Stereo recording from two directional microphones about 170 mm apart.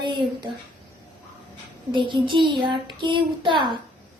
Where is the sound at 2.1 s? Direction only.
30° right (ahead or behind).